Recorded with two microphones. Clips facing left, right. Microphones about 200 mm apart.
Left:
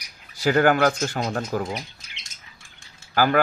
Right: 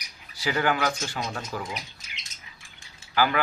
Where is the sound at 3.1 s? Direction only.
45° left (ahead or behind).